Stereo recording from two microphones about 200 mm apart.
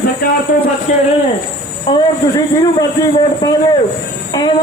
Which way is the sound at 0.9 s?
35° left (ahead or behind).